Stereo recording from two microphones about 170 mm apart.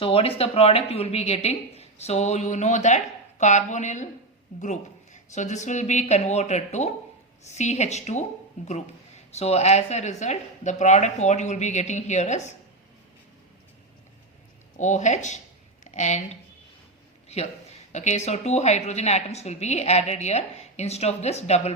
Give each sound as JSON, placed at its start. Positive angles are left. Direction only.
{"t": 0.0, "sound": "a woman's voice", "side_deg": 35}
{"t": 14.8, "sound": "speech", "side_deg": 45}
{"t": 17.9, "sound": "a woman's voice", "side_deg": 45}